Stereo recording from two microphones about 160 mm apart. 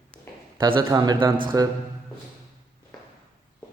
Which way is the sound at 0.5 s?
30° right (ahead or behind).